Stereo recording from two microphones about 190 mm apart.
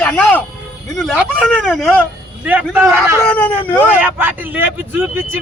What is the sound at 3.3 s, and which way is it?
Speech, 10° left (ahead or behind).